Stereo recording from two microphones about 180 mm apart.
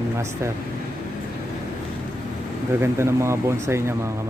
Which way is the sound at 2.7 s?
15° right (ahead or behind).